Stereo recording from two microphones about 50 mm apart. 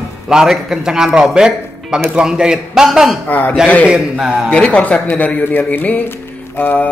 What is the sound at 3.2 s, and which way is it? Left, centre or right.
Speech, left.